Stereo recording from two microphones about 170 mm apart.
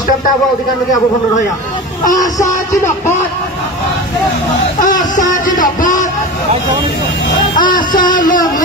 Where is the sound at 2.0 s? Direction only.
20° left (ahead or behind).